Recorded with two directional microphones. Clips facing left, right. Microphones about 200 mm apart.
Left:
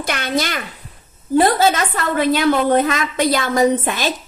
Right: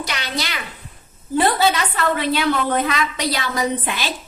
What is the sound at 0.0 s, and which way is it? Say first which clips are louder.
A woman's voice: left 6 dB; 50° left (ahead or behind).